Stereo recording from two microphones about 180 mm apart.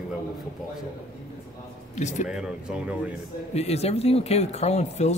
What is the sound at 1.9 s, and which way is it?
Speech, 40° left (ahead or behind).